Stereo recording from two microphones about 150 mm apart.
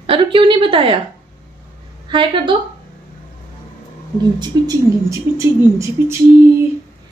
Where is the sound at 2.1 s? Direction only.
35° right (ahead or behind).